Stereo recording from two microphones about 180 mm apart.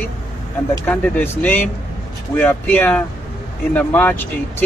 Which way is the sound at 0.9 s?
10° left (ahead or behind).